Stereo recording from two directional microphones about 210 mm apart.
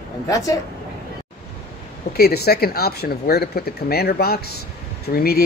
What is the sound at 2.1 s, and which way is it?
Speech, 50° left (ahead or behind).